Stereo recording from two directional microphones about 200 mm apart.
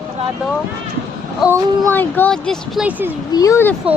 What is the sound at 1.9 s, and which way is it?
Speech, 10° left (ahead or behind).